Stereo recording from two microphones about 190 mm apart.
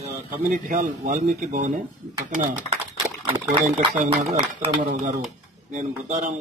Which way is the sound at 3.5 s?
30° right (ahead or behind).